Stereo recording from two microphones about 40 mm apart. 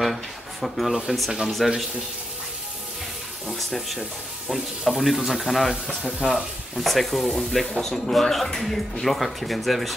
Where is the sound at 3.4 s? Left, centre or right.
Centre.